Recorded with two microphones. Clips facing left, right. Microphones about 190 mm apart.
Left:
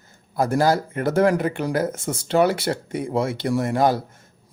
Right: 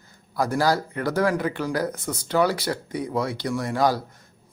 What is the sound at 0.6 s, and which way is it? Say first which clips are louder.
Speech: left 2 dB; 20° left (ahead or behind).